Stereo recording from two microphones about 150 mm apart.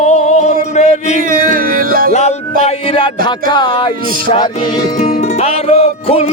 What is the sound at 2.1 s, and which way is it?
Male singing, 50° left (ahead or behind).